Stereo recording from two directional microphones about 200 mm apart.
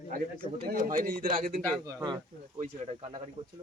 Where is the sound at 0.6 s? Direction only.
45° right (ahead or behind).